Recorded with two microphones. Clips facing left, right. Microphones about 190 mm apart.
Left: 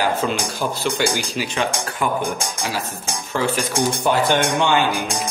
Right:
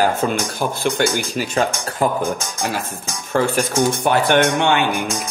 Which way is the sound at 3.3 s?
50° right (ahead or behind).